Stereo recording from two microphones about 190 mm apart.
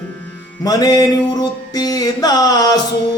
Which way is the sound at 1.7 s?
20° left (ahead or behind).